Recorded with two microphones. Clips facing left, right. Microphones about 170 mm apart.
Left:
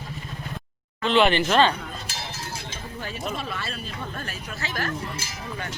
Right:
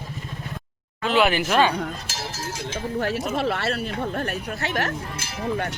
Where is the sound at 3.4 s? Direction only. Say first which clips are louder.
Right 9 dB; 70° right (ahead or behind).